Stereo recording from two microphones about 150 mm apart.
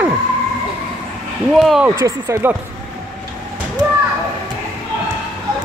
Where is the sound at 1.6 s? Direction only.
Centre (ahead or behind).